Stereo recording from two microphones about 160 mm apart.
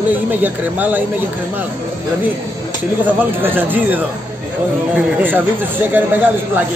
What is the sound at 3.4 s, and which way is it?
Speech, 10° right (ahead or behind).